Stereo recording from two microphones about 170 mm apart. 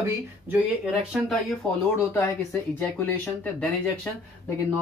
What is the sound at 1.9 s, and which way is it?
Speech, 15° left (ahead or behind).